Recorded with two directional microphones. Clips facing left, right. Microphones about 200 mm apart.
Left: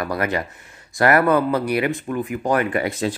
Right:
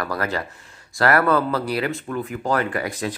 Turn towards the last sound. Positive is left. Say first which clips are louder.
# left 4 dB
turn(degrees=25)  # may be behind; listen again after turning